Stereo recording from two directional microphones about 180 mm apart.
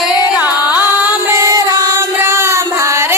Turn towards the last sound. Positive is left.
turn(degrees=-15)  # may be behind; listen again after turning